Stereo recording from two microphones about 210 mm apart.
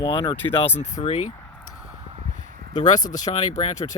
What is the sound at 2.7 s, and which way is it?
Speech, 35° left (ahead or behind).